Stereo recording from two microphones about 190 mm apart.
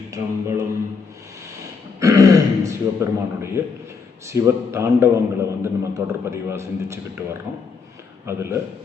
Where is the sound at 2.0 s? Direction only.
15° right (ahead or behind).